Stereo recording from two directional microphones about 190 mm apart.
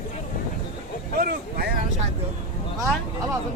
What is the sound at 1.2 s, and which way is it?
Vehicle, 55° right (ahead or behind).